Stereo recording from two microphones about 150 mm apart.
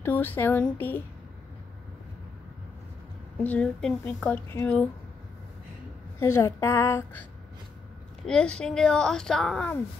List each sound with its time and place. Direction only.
0.0 s speech: 10° left (ahead or behind)
3.4 s speech: 5° left (ahead or behind)
6.1 s a woman's voice: 20° left (ahead or behind)
8.3 s speech: 5° left (ahead or behind)